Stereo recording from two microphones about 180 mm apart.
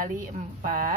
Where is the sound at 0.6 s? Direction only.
50° right (ahead or behind).